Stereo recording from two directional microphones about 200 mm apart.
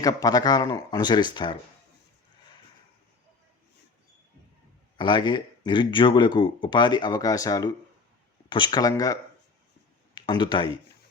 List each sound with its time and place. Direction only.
0.0 s speech: 15° left (ahead or behind)
4.9 s speech: 25° left (ahead or behind)
10.2 s speech: 25° left (ahead or behind)